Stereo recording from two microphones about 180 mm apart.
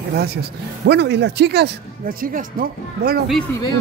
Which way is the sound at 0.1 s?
60° right (ahead or behind).